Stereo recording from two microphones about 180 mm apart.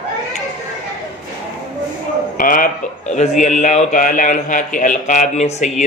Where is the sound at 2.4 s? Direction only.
50° left (ahead or behind).